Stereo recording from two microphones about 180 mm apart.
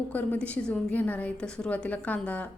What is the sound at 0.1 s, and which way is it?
A woman's voice, 10° left (ahead or behind).